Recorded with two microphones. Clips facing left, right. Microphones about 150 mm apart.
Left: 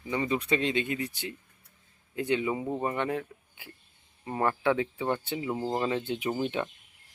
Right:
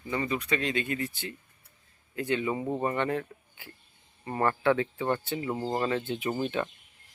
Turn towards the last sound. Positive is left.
turn(degrees=15)  # may be behind; listen again after turning